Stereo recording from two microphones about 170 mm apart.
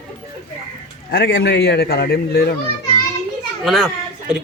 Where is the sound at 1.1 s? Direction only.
70° left (ahead or behind).